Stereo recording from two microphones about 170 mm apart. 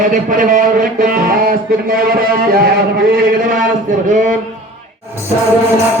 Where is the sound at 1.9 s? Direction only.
60° right (ahead or behind).